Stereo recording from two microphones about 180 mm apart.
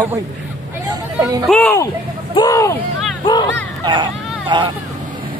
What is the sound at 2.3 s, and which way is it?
Speech, 20° left (ahead or behind).